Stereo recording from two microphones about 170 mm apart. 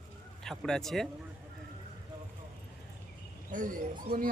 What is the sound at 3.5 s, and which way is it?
Speech, 50° right (ahead or behind).